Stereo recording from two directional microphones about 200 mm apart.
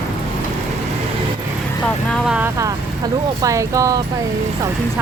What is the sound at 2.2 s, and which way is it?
Speech, 10° right (ahead or behind).